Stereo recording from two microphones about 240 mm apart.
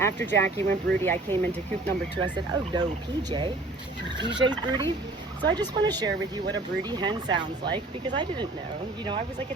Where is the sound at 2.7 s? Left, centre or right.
Centre.